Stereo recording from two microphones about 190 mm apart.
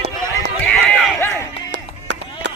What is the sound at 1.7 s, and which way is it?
Music, 75° right (ahead or behind).